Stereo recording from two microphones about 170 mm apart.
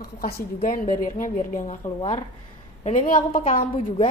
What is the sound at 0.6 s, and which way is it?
Music, 55° left (ahead or behind).